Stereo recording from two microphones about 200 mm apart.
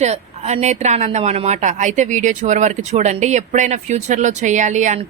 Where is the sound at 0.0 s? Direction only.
35° right (ahead or behind).